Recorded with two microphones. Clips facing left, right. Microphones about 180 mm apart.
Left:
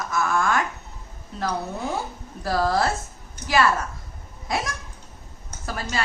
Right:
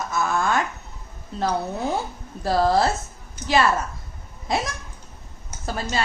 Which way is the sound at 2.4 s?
25° right (ahead or behind).